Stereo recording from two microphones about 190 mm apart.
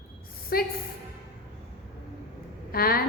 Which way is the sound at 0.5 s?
55° left (ahead or behind).